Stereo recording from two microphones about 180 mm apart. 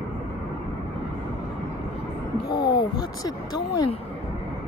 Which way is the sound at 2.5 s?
25° left (ahead or behind).